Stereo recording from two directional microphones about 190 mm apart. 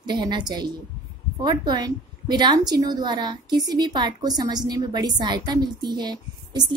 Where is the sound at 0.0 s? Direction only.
20° right (ahead or behind).